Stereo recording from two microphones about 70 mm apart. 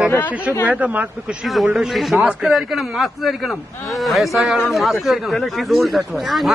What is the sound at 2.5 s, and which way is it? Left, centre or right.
A man's voice, centre.